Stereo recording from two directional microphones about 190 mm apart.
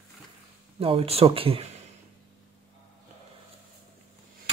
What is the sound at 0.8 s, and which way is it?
Speech, 30° right (ahead or behind).